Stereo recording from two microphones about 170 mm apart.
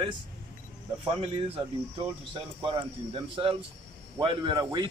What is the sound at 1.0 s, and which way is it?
Speech, 35° right (ahead or behind).